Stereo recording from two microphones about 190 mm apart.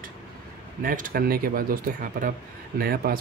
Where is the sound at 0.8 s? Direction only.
45° right (ahead or behind).